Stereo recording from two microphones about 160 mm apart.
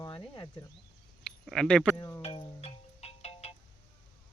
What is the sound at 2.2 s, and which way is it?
Music, 40° left (ahead or behind).